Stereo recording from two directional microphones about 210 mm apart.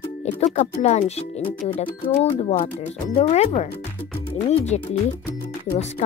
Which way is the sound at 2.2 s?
30° left (ahead or behind).